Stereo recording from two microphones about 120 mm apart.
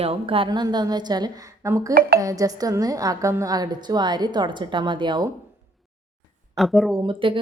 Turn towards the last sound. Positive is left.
turn(degrees=-45)  # may be behind; listen again after turning